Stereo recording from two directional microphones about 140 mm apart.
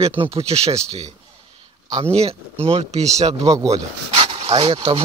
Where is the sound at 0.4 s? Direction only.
45° right (ahead or behind).